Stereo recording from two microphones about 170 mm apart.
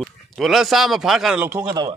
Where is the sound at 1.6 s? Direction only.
25° right (ahead or behind).